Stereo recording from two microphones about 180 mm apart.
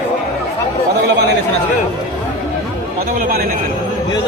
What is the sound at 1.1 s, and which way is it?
Speech, 70° right (ahead or behind).